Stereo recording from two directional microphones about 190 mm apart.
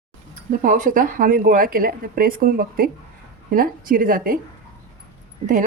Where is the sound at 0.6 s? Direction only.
40° right (ahead or behind).